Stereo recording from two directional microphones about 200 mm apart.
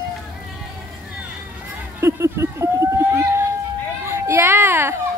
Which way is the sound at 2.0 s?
15° right (ahead or behind).